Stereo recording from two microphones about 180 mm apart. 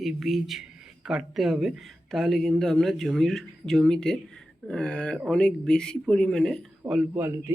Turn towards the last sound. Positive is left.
turn(degrees=-15)  # may be behind; listen again after turning